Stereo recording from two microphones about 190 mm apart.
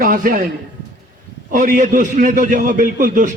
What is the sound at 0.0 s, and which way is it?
Speech, 45° right (ahead or behind).